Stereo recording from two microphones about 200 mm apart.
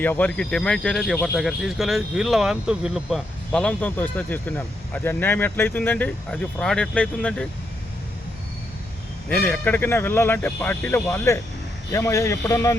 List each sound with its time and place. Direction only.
0.0 s speech: 10° left (ahead or behind)
9.3 s speech: 5° left (ahead or behind)